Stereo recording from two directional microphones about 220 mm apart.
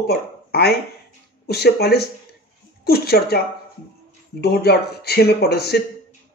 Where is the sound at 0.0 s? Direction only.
45° left (ahead or behind).